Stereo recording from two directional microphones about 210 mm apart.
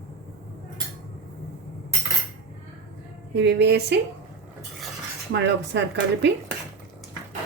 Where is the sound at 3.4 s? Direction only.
55° right (ahead or behind).